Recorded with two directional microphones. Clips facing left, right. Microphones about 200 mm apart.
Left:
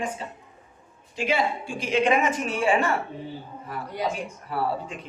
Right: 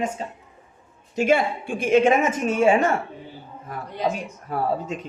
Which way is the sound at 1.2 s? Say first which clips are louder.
Right 5 dB; 50° right (ahead or behind).